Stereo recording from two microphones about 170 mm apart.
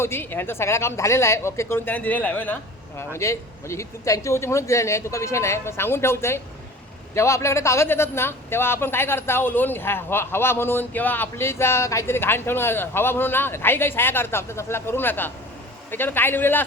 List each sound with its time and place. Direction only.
0.0 s a man's voice: 15° left (ahead or behind)